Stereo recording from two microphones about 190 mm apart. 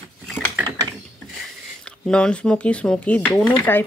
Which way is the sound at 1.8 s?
5° left (ahead or behind).